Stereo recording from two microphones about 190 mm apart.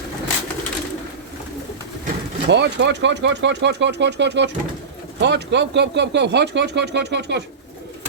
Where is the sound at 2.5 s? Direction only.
65° right (ahead or behind).